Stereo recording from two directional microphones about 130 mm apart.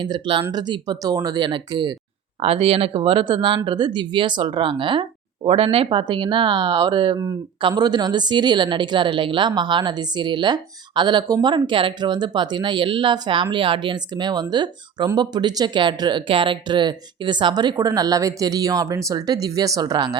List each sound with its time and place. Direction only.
0.0 s speech: 40° right (ahead or behind)
2.4 s speech: 50° right (ahead or behind); by 20.1 s 30° right (ahead or behind)